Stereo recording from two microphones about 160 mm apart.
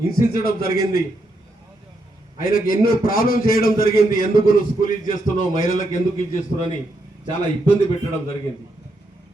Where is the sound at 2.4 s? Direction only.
65° left (ahead or behind).